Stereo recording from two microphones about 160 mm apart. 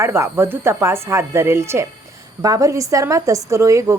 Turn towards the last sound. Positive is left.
turn(degrees=-20)  # may be behind; listen again after turning